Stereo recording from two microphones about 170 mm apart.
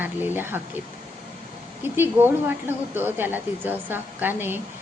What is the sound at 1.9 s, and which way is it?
Speech, 10° right (ahead or behind).